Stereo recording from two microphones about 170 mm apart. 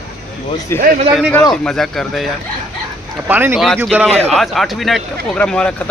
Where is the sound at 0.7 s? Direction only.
15° left (ahead or behind).